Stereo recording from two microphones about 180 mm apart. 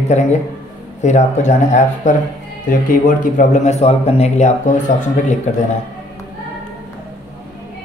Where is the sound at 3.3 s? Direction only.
40° left (ahead or behind).